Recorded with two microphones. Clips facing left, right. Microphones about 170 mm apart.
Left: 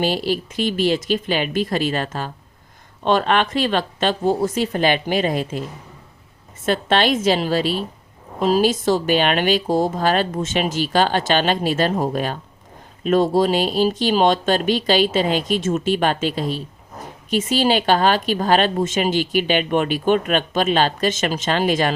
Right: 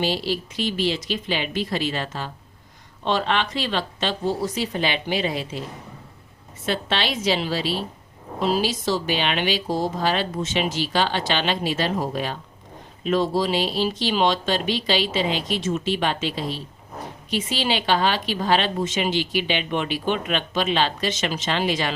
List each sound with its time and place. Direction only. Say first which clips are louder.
0.0 s a woman's voice: left 4 dB; 50° left (ahead or behind)
6.7 s a woman's voice: left 7 dB; 50° left (ahead or behind)